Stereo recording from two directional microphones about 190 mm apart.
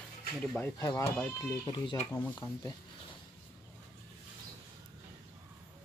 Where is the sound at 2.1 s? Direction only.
10° left (ahead or behind).